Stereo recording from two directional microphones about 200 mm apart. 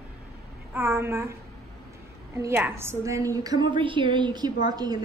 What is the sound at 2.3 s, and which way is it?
A woman's voice, 15° right (ahead or behind).